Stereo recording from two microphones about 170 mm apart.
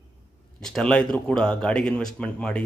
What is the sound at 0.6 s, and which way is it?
Speech, 5° left (ahead or behind).